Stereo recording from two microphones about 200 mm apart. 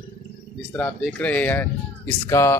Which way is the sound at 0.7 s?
10° left (ahead or behind).